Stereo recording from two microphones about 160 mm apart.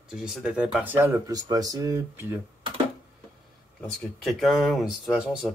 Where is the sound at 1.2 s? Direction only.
25° right (ahead or behind).